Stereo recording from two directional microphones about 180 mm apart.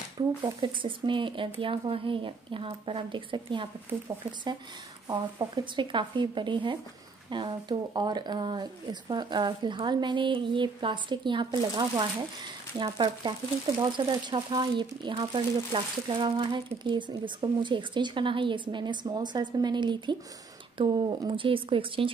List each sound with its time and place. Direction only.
0.4 s speech: 25° right (ahead or behind)
3.9 s speech: 15° right (ahead or behind)